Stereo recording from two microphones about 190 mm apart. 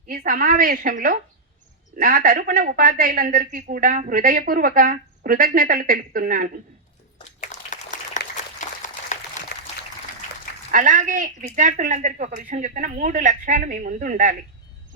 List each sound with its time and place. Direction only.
0.1 s speech: 50° right (ahead or behind)
7.4 s applause: 40° left (ahead or behind)
8.6 s a sound: 40° left (ahead or behind)
10.7 s speech: 45° right (ahead or behind)